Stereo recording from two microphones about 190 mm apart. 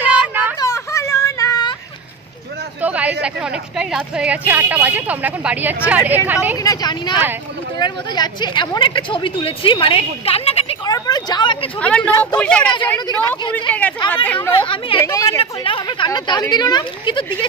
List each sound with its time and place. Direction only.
0.0 s a sound: 10° right (ahead or behind)
0.6 s a sound: 15° left (ahead or behind)
2.8 s chatter: 10° right (ahead or behind)
3.7 s a woman's voice: 5° right (ahead or behind)
6.6 s speech: 20° left (ahead or behind)
10.9 s vehicle: 20° left (ahead or behind)
11.8 s a woman's voice: 5° left (ahead or behind)
14.5 s speech: 25° left (ahead or behind)
15.0 s speech: 15° left (ahead or behind)